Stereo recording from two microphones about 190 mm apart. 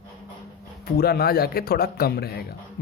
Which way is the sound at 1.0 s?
55° left (ahead or behind).